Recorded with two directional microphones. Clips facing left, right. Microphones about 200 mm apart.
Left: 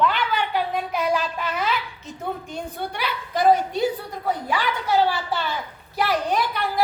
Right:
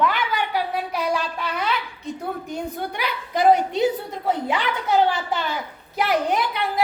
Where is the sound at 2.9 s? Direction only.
15° right (ahead or behind).